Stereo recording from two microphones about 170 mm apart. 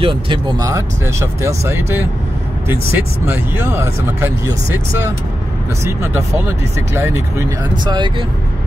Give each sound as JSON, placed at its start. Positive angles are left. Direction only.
{"t": 0.0, "sound": "speech", "side_deg": -30}
{"t": 0.6, "sound": "speech", "side_deg": -20}
{"t": 5.9, "sound": "speech", "side_deg": -15}
{"t": 7.8, "sound": "speech", "side_deg": -25}